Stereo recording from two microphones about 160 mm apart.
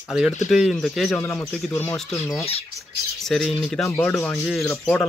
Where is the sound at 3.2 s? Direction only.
Centre (ahead or behind).